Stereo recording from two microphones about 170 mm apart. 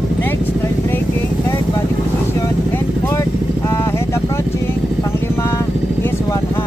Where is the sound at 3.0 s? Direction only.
15° left (ahead or behind).